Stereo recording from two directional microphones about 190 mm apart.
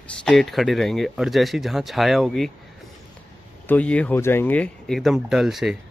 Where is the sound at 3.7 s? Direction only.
5° left (ahead or behind).